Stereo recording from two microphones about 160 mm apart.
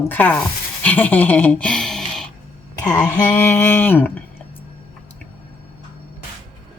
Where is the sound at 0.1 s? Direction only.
10° left (ahead or behind).